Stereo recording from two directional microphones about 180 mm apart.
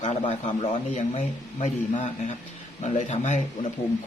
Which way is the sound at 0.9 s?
40° left (ahead or behind).